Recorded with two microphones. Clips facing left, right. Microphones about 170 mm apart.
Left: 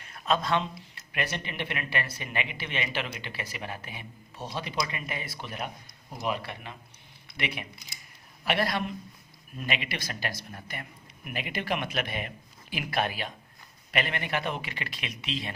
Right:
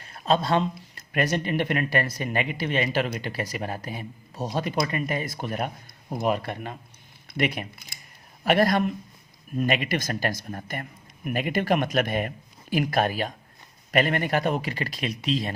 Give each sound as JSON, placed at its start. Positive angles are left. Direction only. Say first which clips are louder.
{"t": 0.0, "sound": "a man's voice", "louder": "right 4 dB", "side_deg": -35}